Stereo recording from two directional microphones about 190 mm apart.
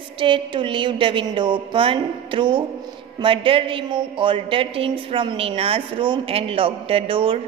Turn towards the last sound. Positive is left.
turn(degrees=-25)  # may be behind; listen again after turning